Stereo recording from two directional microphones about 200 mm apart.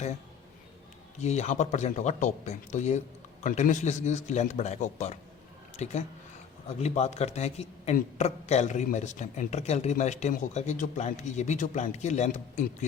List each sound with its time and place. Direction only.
1.2 s a man's voice: 35° left (ahead or behind)